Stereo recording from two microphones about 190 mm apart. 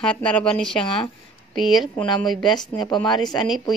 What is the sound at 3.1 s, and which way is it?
Speech, 20° left (ahead or behind).